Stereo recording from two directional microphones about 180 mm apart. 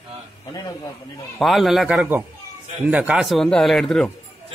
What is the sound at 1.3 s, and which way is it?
A man's voice, centre (ahead or behind).